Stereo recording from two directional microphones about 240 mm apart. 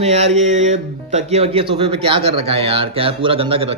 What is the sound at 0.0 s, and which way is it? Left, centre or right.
Speech, right.